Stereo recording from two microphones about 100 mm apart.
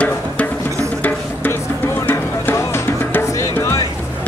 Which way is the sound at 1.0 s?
20° left (ahead or behind).